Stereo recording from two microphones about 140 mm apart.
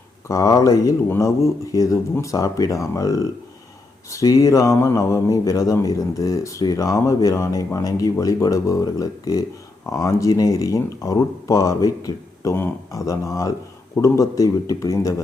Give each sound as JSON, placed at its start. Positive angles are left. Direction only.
{"t": 0.3, "sound": "speech", "side_deg": 25}